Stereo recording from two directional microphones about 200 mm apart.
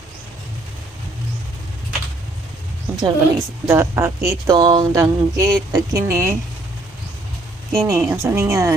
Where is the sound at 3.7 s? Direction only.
15° right (ahead or behind).